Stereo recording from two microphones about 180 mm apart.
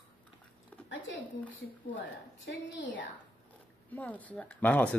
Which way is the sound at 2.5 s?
90° left.